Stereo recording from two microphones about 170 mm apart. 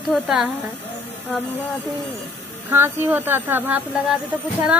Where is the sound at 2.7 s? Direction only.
10° right (ahead or behind).